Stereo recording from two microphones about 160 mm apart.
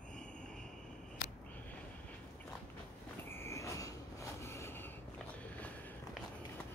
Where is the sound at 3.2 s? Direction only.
15° left (ahead or behind).